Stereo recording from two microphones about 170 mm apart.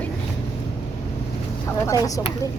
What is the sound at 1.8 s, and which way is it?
Speech, 20° left (ahead or behind).